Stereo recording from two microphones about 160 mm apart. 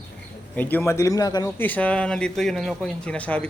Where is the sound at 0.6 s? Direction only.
10° left (ahead or behind).